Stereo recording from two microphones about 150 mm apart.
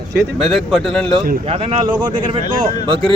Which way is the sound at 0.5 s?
Centre (ahead or behind).